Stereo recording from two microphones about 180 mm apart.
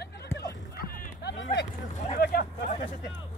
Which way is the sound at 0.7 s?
60° left (ahead or behind).